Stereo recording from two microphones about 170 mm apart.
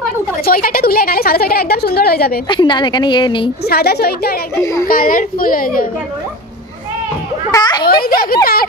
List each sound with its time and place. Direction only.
0.5 s a woman's voice: 60° left (ahead or behind)
2.4 s a woman's voice: 25° left (ahead or behind)
3.6 s speech: 70° left (ahead or behind)
4.8 s a woman's voice: 55° left (ahead or behind)
7.5 s a woman's voice: 25° left (ahead or behind)
7.9 s a woman's voice: 60° left (ahead or behind)